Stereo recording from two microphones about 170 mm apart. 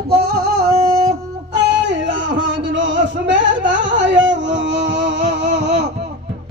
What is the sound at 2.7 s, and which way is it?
Music, 90° right.